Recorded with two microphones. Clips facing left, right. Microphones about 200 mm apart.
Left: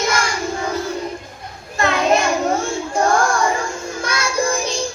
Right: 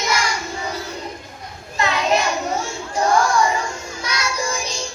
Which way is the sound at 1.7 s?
50° left (ahead or behind).